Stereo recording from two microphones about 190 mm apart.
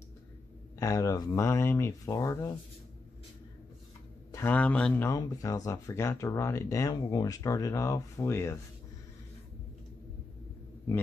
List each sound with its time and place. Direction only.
0.7 s speech: 15° left (ahead or behind)
4.3 s speech: 10° left (ahead or behind)